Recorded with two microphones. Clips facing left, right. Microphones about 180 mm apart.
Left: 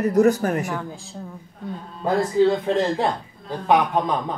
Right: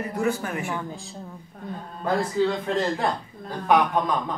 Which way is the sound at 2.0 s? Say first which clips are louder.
Left 5 dB; 20° left (ahead or behind).